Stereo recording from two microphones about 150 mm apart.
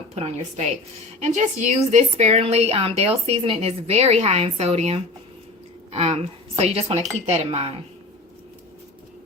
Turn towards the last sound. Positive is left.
turn(degrees=-45)  # may be behind; listen again after turning